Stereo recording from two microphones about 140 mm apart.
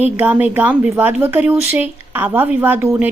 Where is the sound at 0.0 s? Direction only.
10° right (ahead or behind).